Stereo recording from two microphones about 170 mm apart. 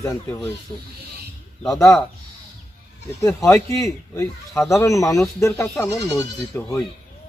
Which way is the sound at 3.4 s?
20° left (ahead or behind).